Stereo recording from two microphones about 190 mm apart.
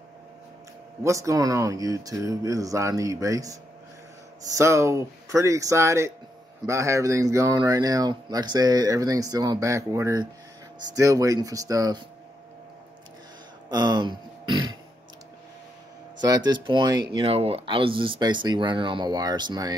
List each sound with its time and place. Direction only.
1.0 s speech: 15° right (ahead or behind)
13.7 s burping: 20° right (ahead or behind)
16.2 s speech: 20° right (ahead or behind)